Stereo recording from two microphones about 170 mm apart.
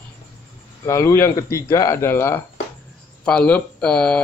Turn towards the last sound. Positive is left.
turn(degrees=5)  # may be behind; listen again after turning